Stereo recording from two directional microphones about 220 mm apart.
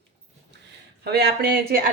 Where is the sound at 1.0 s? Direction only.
45° right (ahead or behind).